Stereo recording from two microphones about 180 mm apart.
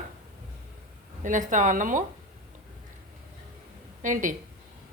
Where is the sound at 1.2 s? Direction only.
45° right (ahead or behind).